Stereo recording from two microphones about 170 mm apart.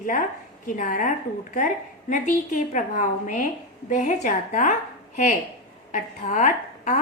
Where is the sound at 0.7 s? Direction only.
50° left (ahead or behind).